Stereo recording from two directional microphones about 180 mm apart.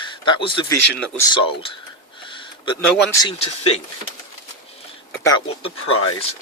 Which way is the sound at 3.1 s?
20° left (ahead or behind).